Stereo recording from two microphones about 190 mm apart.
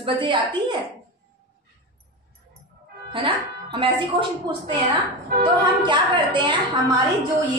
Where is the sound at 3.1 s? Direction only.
25° right (ahead or behind).